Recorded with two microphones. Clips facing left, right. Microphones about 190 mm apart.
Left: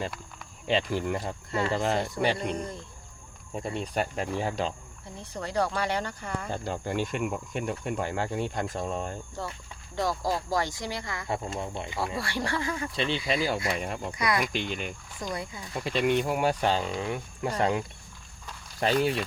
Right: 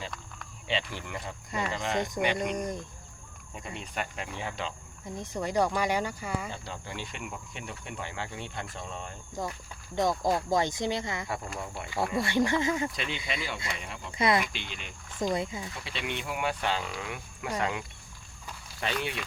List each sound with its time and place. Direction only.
0.7 s speech: 45° left (ahead or behind)
2.6 s speech: 15° right (ahead or behind)
3.5 s speech: 35° left (ahead or behind)
5.1 s speech: 15° right (ahead or behind)
6.5 s speech: 50° left (ahead or behind)
9.4 s speech: 15° right (ahead or behind)
11.3 s speech: 25° left (ahead or behind)
12.1 s speech: 20° right (ahead or behind)
12.9 s speech: 30° left (ahead or behind)
14.2 s speech: 25° right (ahead or behind)
14.4 s speech: 45° left (ahead or behind)
15.2 s speech: 20° right (ahead or behind)
15.7 s speech: 45° left (ahead or behind)